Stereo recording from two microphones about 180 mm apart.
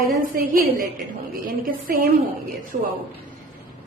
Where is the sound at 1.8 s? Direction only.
50° right (ahead or behind).